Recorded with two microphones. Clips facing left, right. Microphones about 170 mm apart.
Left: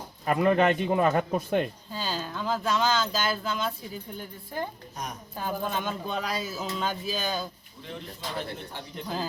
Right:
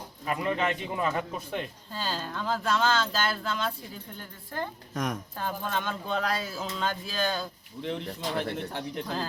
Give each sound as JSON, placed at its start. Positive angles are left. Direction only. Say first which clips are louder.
{"t": 0.3, "sound": "speech", "louder": "left 6 dB", "side_deg": 50}
{"t": 1.9, "sound": "speech", "louder": "left 1 dB", "side_deg": 0}
{"t": 4.9, "sound": "a woman's voice", "louder": "right 7 dB", "side_deg": -90}
{"t": 5.4, "sound": "speech", "louder": "left 3 dB", "side_deg": 10}
{"t": 7.8, "sound": "speech", "louder": "right 6 dB", "side_deg": -70}